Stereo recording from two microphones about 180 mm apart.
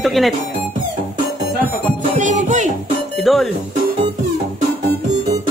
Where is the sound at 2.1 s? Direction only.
40° right (ahead or behind).